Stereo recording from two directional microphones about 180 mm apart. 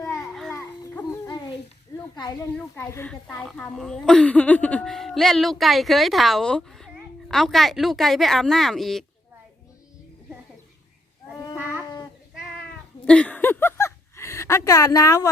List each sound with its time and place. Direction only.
0.0 s children playing: centre (ahead or behind)
0.5 s a sound: 15° left (ahead or behind)
2.6 s a child's voice: 10° left (ahead or behind)
13.1 s speech: 5° left (ahead or behind)